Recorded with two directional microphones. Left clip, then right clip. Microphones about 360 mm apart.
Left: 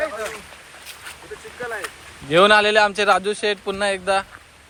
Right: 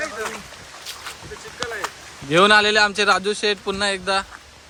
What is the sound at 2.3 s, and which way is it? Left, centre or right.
A man's voice, centre.